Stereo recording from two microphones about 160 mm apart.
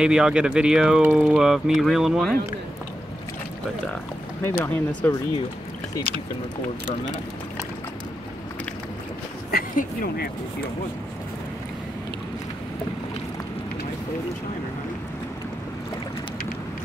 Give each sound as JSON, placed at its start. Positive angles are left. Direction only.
{"t": 0.0, "sound": "speech", "side_deg": -5}
{"t": 4.6, "sound": "speech", "side_deg": 15}
{"t": 9.5, "sound": "speech", "side_deg": 65}